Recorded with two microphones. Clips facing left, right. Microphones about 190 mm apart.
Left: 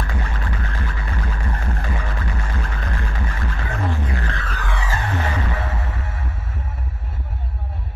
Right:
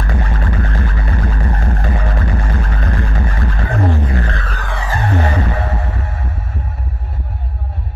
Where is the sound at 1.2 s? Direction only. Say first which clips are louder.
Right 6 dB; 55° right (ahead or behind).